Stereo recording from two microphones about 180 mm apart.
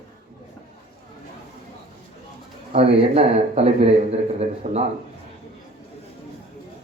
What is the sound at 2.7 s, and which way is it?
A man's voice, 35° right (ahead or behind).